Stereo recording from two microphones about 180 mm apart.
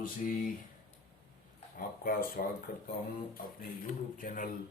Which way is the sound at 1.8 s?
50° left (ahead or behind).